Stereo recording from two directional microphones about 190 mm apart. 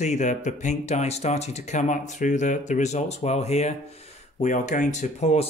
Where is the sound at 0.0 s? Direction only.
40° left (ahead or behind).